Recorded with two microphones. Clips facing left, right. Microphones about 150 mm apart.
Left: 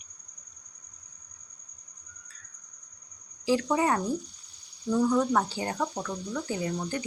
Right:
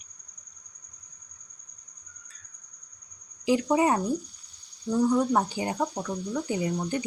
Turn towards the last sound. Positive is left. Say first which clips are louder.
# right 3 dB
turn(degrees=-20)  # may be behind; listen again after turning